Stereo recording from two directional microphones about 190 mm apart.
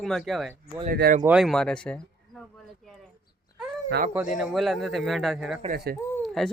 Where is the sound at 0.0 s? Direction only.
Centre (ahead or behind).